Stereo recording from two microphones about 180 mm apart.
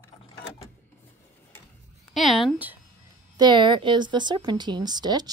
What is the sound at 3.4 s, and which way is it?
Speech, 25° right (ahead or behind).